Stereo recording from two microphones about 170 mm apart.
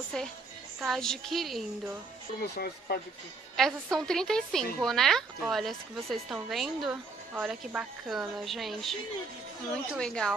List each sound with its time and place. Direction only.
0.1 s speech: 5° left (ahead or behind)
2.4 s speech: 70° left (ahead or behind)
3.5 s speech: centre (ahead or behind)
9.9 s speech: 5° left (ahead or behind)